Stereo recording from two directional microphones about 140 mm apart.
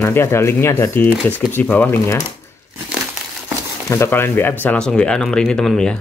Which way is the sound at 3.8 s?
20° left (ahead or behind).